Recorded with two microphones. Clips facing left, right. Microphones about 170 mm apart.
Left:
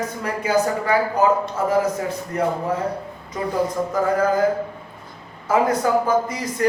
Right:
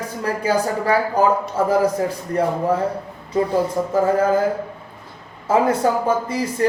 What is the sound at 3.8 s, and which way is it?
Speech, 40° right (ahead or behind).